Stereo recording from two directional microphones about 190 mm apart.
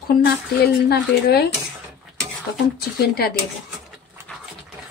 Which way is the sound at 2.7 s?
55° left (ahead or behind).